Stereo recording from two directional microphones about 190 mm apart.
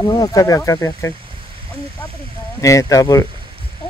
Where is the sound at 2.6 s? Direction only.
15° left (ahead or behind).